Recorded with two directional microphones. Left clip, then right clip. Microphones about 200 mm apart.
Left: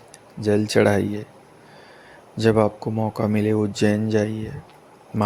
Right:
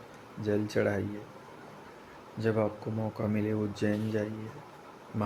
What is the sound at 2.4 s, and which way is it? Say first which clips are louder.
Speech: left 11 dB; 50° left (ahead or behind).